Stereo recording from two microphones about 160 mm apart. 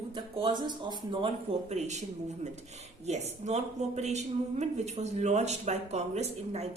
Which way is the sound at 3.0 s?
45° right (ahead or behind).